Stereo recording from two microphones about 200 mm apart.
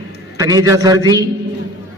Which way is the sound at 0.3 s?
15° right (ahead or behind).